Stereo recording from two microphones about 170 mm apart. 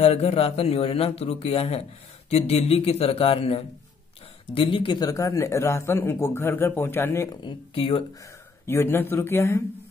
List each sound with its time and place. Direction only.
0.0 s a man's voice: 35° left (ahead or behind); by 7.2 s 15° left (ahead or behind)
7.3 s a man's voice: 30° left (ahead or behind)
8.6 s speech: 15° left (ahead or behind)